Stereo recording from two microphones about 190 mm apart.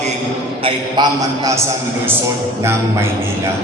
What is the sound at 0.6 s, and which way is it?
Speech, 25° right (ahead or behind).